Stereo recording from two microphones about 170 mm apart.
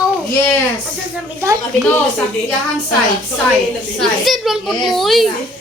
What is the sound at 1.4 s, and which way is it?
Speech, 15° right (ahead or behind).